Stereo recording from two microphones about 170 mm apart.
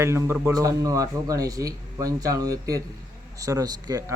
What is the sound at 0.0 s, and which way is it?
A man's voice, 15° right (ahead or behind).